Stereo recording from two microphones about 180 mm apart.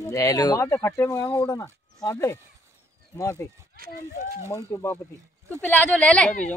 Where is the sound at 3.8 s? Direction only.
55° right (ahead or behind).